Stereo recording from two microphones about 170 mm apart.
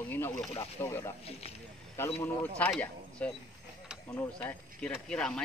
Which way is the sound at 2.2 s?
10° left (ahead or behind).